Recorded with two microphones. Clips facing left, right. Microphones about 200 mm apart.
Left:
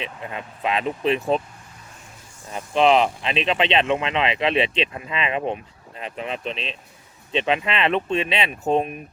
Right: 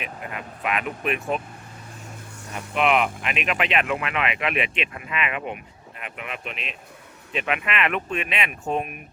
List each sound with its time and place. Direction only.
0.0 s speech: 25° left (ahead or behind)
2.7 s speech: 30° left (ahead or behind)